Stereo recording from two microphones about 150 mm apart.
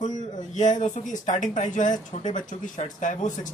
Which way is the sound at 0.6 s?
55° left (ahead or behind).